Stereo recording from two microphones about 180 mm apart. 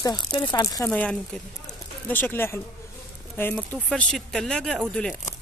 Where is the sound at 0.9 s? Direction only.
5° left (ahead or behind).